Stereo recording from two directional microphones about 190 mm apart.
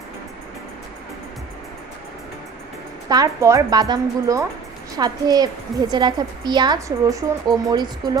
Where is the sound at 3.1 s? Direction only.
20° right (ahead or behind).